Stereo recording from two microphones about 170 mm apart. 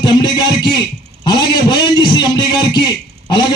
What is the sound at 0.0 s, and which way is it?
A man's voice, 25° left (ahead or behind).